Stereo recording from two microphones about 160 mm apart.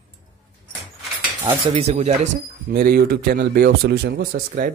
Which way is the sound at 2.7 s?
70° right (ahead or behind).